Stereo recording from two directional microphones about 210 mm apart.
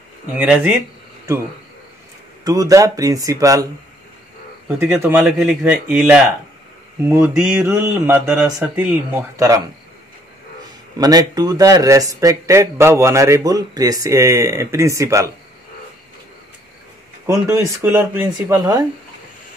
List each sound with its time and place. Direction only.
0.3 s speech: 5° right (ahead or behind)
2.4 s speech: 15° right (ahead or behind)
4.6 s speech: 5° right (ahead or behind)
11.0 s speech: 20° right (ahead or behind)
17.3 s speech: 15° right (ahead or behind)